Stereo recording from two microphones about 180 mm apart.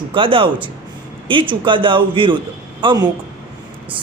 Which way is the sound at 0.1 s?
30° right (ahead or behind).